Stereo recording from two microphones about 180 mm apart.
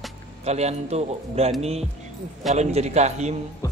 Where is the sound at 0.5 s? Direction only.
35° right (ahead or behind).